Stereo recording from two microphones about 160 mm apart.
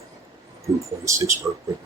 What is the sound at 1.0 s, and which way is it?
Speech, 20° right (ahead or behind).